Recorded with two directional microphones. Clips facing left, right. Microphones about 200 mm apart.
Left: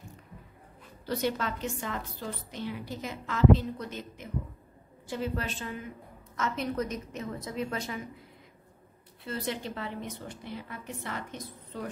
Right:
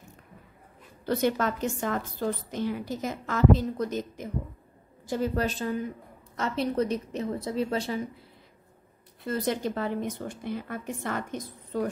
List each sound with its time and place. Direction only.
1.0 s a woman's voice: 45° right (ahead or behind)
9.2 s a woman's voice: 45° right (ahead or behind)